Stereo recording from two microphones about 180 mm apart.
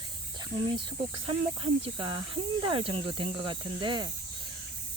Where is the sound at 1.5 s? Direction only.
30° right (ahead or behind).